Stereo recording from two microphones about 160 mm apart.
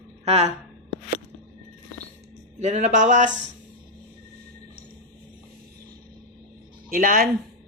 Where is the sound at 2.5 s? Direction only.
45° right (ahead or behind).